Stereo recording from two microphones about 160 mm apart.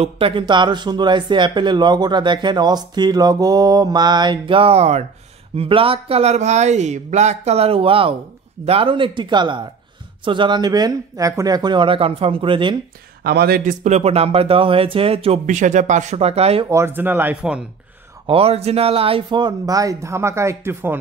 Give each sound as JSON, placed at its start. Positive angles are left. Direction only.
{"t": 0.0, "sound": "speech", "side_deg": -35}
{"t": 13.2, "sound": "speech", "side_deg": -80}
{"t": 16.6, "sound": "speech", "side_deg": -15}
{"t": 18.2, "sound": "speech", "side_deg": -35}